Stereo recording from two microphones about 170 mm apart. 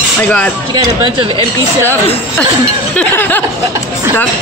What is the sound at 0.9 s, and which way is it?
Speech, 30° right (ahead or behind).